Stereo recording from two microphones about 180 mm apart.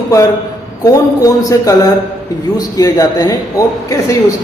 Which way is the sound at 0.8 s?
20° left (ahead or behind).